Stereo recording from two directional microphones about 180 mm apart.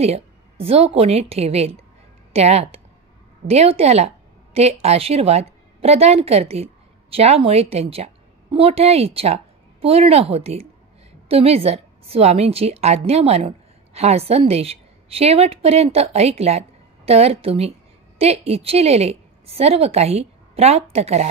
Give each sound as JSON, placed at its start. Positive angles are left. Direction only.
{"t": 0.0, "sound": "a woman's voice", "side_deg": -35}